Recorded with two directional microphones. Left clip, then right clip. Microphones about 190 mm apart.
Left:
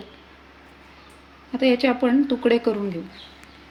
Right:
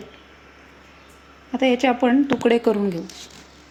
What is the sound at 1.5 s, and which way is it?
A woman's voice, 15° right (ahead or behind).